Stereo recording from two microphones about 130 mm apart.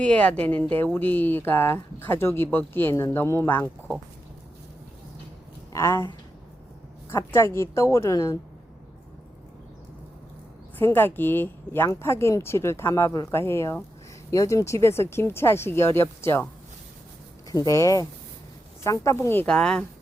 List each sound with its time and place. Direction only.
0.0 s speech: 10° left (ahead or behind)
5.7 s speech: 20° left (ahead or behind)
7.1 s a woman's voice: 20° left (ahead or behind)
10.8 s a woman's voice: 15° left (ahead or behind)
17.5 s a woman's voice: 25° left (ahead or behind); by 19.8 s 5° left (ahead or behind)